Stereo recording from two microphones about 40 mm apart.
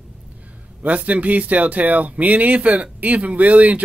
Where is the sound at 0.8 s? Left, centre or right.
Right.